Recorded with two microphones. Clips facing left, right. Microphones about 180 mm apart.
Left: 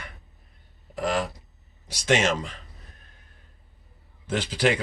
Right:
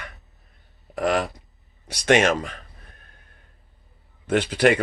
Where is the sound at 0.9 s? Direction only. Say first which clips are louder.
Right 4 dB; 65° right (ahead or behind).